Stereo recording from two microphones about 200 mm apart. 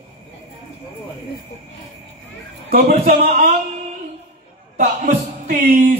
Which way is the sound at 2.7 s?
45° right (ahead or behind).